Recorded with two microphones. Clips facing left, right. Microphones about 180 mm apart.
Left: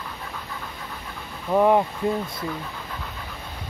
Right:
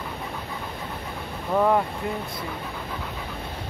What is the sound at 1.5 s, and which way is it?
Speech, 15° left (ahead or behind).